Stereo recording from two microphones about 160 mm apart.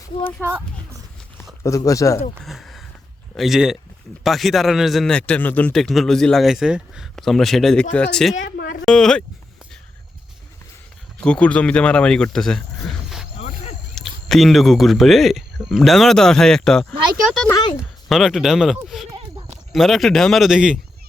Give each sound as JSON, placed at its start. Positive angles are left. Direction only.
{"t": 0.4, "sound": "a sound", "side_deg": -15}
{"t": 1.6, "sound": "speech", "side_deg": 20}
{"t": 2.4, "sound": "a man's voice", "side_deg": 0}
{"t": 8.4, "sound": "a sound", "side_deg": 70}
{"t": 8.9, "sound": "a man's voice", "side_deg": 5}
{"t": 11.2, "sound": "a man's voice", "side_deg": 5}
{"t": 13.9, "sound": "a man's voice", "side_deg": 0}